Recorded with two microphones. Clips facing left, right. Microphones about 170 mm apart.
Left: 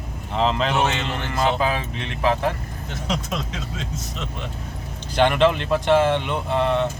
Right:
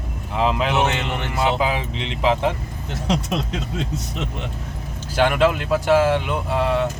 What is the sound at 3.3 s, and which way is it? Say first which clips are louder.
Speech: right 4 dB; 65° right (ahead or behind).